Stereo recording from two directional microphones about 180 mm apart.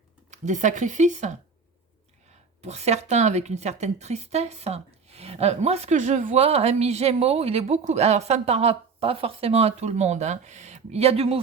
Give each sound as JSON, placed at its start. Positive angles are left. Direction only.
{"t": 0.3, "sound": "speech", "side_deg": -40}
{"t": 2.6, "sound": "a woman's voice", "side_deg": -35}